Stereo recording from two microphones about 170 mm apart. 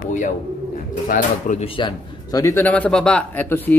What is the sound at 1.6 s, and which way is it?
A man's voice, 25° left (ahead or behind).